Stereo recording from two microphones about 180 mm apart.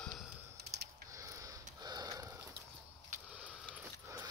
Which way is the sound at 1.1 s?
15° right (ahead or behind).